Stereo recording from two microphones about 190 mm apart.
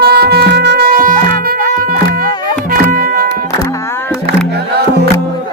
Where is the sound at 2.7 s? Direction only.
50° right (ahead or behind).